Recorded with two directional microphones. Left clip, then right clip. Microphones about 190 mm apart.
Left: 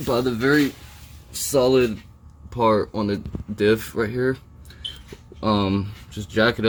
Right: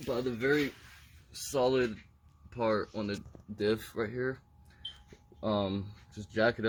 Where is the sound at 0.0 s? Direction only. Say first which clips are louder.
Left 11 dB; 15° left (ahead or behind).